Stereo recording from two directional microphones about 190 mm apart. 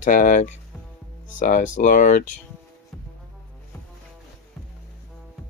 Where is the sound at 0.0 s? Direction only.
45° left (ahead or behind).